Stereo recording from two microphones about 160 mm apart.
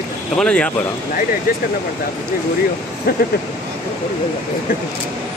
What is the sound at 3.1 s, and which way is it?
Speech, 70° left (ahead or behind).